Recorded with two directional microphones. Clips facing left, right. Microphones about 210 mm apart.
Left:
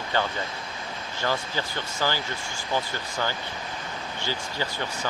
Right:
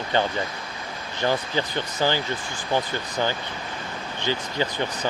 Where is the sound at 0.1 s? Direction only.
20° right (ahead or behind).